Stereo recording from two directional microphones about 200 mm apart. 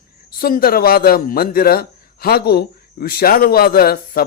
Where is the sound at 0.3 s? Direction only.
50° left (ahead or behind).